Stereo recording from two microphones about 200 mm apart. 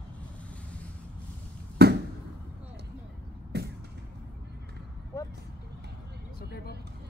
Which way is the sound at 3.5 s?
55° right (ahead or behind).